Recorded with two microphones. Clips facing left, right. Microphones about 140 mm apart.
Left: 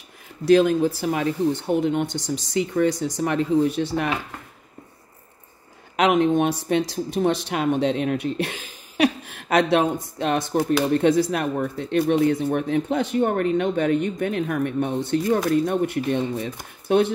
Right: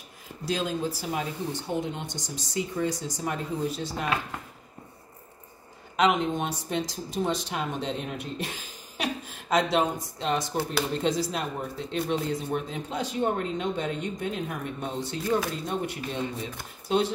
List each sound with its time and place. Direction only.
0.5 s speech: 60° left (ahead or behind)
5.9 s speech: 65° left (ahead or behind)